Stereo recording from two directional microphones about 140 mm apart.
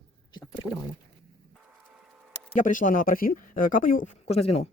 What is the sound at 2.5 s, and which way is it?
Speech, 65° left (ahead or behind).